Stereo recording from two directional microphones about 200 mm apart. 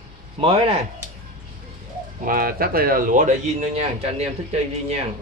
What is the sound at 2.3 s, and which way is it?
A man's voice, 45° right (ahead or behind).